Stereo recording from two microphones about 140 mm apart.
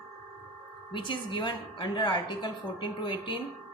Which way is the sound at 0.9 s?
35° left (ahead or behind).